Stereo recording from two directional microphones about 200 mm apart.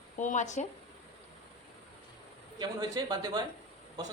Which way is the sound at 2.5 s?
20° right (ahead or behind).